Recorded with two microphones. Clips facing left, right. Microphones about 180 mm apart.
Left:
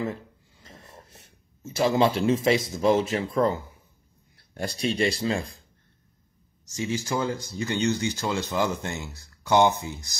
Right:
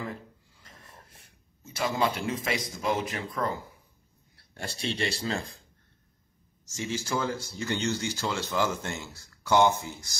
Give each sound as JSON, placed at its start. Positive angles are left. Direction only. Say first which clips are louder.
{"t": 0.0, "sound": "speech", "louder": "left 6 dB", "side_deg": 25}
{"t": 4.9, "sound": "speech", "louder": "left 5 dB", "side_deg": 10}
{"t": 6.8, "sound": "speech", "louder": "left 3 dB", "side_deg": 15}